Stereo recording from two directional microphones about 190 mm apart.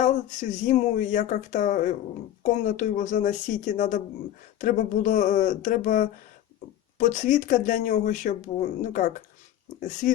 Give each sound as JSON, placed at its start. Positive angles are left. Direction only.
{"t": 0.0, "sound": "speech", "side_deg": 40}